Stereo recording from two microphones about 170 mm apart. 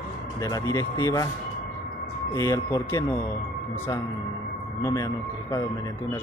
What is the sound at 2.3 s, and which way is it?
Speech, 20° left (ahead or behind).